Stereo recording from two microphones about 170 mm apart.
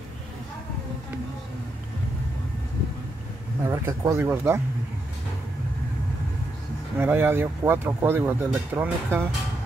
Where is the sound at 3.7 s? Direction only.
15° right (ahead or behind).